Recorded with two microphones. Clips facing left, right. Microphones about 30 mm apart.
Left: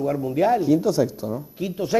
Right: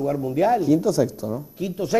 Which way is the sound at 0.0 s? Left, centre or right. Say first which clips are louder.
Even; centre.